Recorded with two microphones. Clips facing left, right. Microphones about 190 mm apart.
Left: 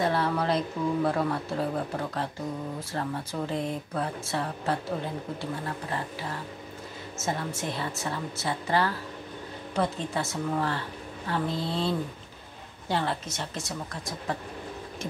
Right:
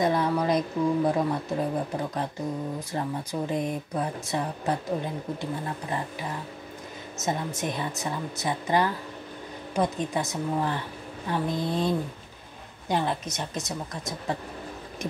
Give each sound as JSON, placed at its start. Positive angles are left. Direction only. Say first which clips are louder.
{"t": 0.0, "sound": "speech", "louder": "right 2 dB", "side_deg": -15}
{"t": 7.2, "sound": "speech", "louder": "right 2 dB", "side_deg": -20}